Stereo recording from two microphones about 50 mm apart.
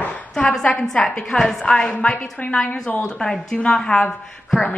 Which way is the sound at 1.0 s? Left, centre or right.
Centre.